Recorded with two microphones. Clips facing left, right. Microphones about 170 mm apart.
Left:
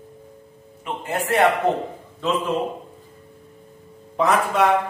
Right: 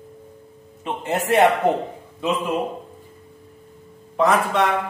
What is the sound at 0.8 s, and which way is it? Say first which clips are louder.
Speech: right 2 dB; 25° right (ahead or behind).